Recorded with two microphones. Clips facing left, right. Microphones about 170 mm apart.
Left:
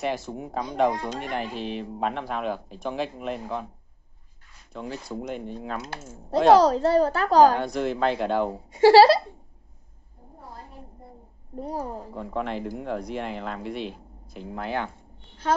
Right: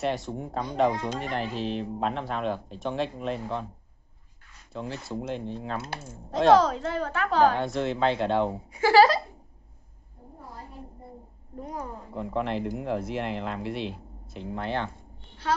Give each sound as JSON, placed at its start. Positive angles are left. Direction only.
{"t": 0.0, "sound": "speech", "side_deg": 0}
{"t": 4.7, "sound": "speech", "side_deg": 0}
{"t": 6.6, "sound": "a woman's voice", "side_deg": 35}
{"t": 7.5, "sound": "speech", "side_deg": 0}
{"t": 8.7, "sound": "a woman's voice", "side_deg": 35}
{"t": 11.5, "sound": "a woman's voice", "side_deg": 35}
{"t": 12.1, "sound": "speech", "side_deg": 0}